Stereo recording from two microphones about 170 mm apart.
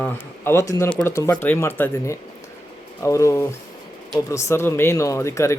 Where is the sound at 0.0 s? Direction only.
15° left (ahead or behind).